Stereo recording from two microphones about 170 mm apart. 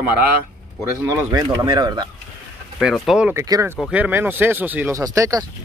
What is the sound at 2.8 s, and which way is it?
Speech, centre (ahead or behind).